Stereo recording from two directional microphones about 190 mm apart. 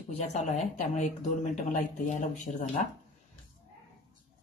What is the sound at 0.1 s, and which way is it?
Speech, 35° left (ahead or behind).